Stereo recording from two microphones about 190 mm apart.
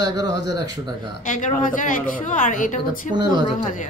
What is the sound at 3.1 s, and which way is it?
Speech, 20° right (ahead or behind).